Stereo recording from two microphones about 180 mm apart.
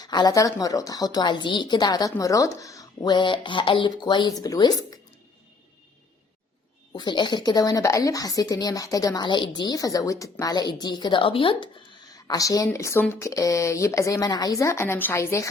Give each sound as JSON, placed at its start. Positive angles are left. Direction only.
{"t": 0.0, "sound": "a woman's voice", "side_deg": 20}
{"t": 6.9, "sound": "a woman's voice", "side_deg": 25}
{"t": 12.1, "sound": "speech", "side_deg": 20}